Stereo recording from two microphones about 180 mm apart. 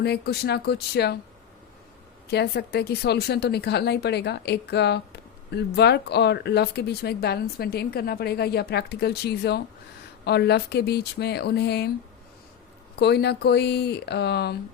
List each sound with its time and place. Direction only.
0.0 s speech: 65° left (ahead or behind)
2.2 s speech: 65° left (ahead or behind)
13.0 s speech: 65° left (ahead or behind)